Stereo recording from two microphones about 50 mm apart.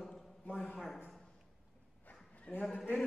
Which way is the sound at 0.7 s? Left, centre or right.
Centre.